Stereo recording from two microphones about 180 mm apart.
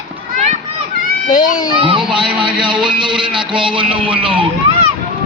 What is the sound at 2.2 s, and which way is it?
Speech, 5° right (ahead or behind).